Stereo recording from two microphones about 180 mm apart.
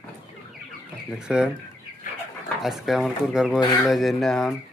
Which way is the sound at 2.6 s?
Centre (ahead or behind).